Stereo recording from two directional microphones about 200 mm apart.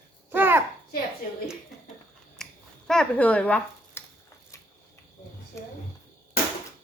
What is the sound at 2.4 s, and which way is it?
Finger snapping, 5° left (ahead or behind).